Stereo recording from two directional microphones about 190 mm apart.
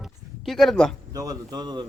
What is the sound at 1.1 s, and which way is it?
Speech, 20° right (ahead or behind).